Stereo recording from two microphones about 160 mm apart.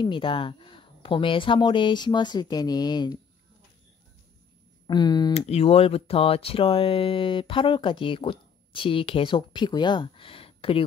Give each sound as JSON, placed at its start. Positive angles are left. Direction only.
{"t": 0.0, "sound": "speech", "side_deg": 30}
{"t": 4.8, "sound": "speech", "side_deg": 25}
{"t": 5.4, "sound": "speech", "side_deg": 40}